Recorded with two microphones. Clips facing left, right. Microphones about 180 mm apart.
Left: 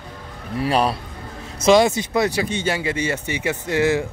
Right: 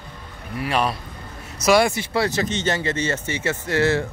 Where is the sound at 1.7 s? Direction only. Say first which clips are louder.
Left 3 dB; 20° left (ahead or behind).